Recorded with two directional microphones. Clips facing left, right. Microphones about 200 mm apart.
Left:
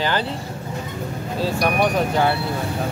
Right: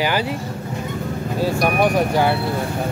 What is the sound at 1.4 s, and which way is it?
Speech, 10° right (ahead or behind).